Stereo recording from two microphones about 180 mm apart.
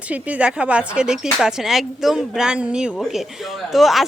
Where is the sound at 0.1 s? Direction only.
10° right (ahead or behind).